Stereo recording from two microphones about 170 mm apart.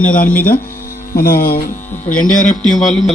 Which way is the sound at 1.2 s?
60° left (ahead or behind).